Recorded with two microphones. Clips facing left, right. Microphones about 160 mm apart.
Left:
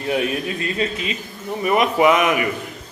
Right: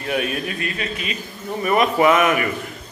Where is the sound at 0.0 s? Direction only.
20° left (ahead or behind).